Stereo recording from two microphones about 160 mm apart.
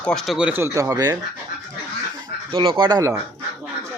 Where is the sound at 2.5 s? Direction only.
35° right (ahead or behind).